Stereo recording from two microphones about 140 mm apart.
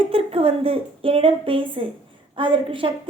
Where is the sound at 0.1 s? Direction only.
45° right (ahead or behind).